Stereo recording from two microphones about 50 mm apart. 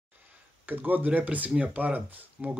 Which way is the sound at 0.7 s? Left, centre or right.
Right.